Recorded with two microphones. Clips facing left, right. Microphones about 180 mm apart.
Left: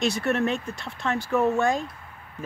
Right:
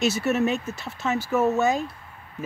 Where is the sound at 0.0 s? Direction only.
5° right (ahead or behind).